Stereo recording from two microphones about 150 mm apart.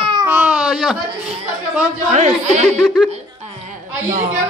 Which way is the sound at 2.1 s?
50° right (ahead or behind).